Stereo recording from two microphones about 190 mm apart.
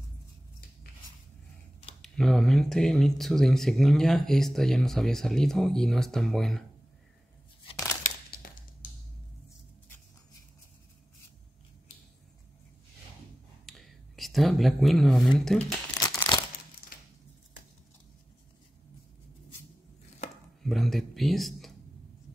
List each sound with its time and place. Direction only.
2.0 s speech: centre (ahead or behind)
7.7 s crumpling: 15° left (ahead or behind)
8.0 s crumpling: 50° left (ahead or behind)
13.7 s a sound: centre (ahead or behind)
16.0 s crumpling: 25° left (ahead or behind)
20.6 s speech: centre (ahead or behind)